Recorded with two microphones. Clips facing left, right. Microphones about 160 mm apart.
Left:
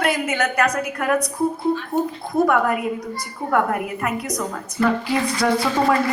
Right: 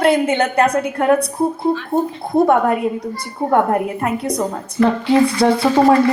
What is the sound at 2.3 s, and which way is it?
A woman's voice, 30° right (ahead or behind).